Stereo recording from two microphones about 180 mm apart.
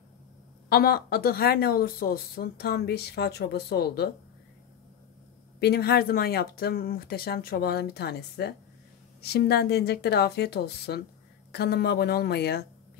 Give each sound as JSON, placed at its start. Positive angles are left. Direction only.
{"t": 0.7, "sound": "speech", "side_deg": 60}
{"t": 5.6, "sound": "speech", "side_deg": 65}